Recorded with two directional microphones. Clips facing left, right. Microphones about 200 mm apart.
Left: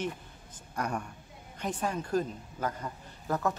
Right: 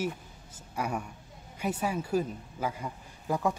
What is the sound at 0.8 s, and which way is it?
A woman's voice, 5° right (ahead or behind).